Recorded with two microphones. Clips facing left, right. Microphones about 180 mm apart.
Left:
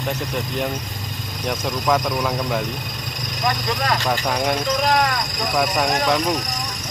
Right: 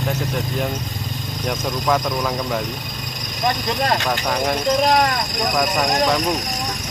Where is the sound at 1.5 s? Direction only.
5° left (ahead or behind).